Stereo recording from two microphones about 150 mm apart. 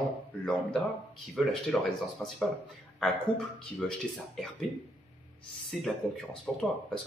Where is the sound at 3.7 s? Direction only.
Centre (ahead or behind).